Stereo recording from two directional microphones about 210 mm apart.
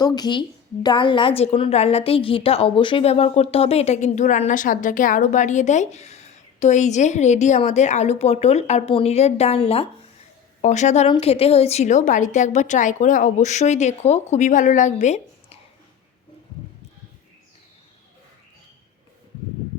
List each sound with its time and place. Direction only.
0.0 s a woman's voice: 20° left (ahead or behind)